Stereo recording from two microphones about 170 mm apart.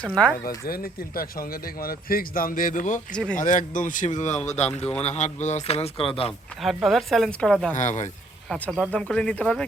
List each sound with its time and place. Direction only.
0.4 s a man's voice: 60° left (ahead or behind); by 6.3 s 30° left (ahead or behind)
6.6 s speech: centre (ahead or behind)
7.8 s a man's voice: 45° left (ahead or behind)
8.4 s speech: 5° left (ahead or behind)